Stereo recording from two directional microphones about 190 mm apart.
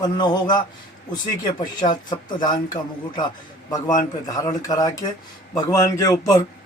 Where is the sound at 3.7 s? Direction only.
20° left (ahead or behind).